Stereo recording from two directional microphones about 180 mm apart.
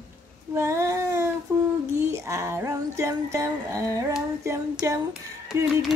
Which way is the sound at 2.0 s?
15° right (ahead or behind).